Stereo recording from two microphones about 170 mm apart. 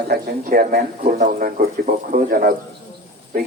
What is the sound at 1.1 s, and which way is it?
A man's voice, 50° right (ahead or behind).